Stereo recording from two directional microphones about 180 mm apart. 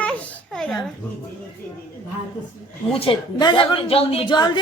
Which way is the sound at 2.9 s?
30° left (ahead or behind).